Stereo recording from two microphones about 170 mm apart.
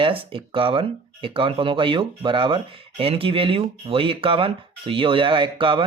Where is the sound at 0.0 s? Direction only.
30° right (ahead or behind).